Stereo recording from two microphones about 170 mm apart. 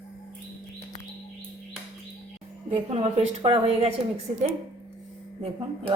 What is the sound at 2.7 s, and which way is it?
Speech, 35° right (ahead or behind).